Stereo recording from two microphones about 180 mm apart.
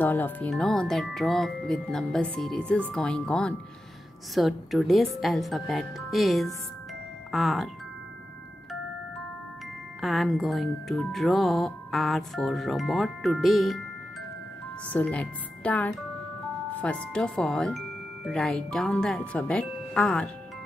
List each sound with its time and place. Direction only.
0.0 s speech: 10° left (ahead or behind)
9.9 s speech: centre (ahead or behind)
14.9 s speech: 10° left (ahead or behind)